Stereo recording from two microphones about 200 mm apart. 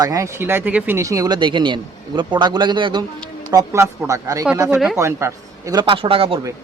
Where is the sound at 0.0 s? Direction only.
15° right (ahead or behind).